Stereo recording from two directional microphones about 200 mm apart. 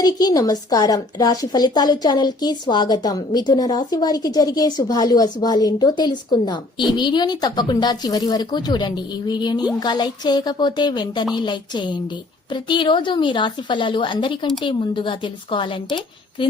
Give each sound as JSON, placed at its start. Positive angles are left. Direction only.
{"t": 0.0, "sound": "a woman's voice", "side_deg": 20}